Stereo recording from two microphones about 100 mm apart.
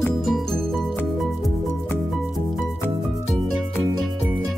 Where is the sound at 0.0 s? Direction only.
5° left (ahead or behind).